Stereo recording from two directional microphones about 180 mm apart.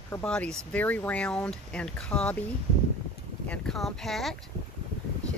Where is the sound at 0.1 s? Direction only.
5° left (ahead or behind).